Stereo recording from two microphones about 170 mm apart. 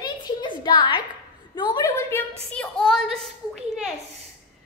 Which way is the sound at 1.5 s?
25° left (ahead or behind).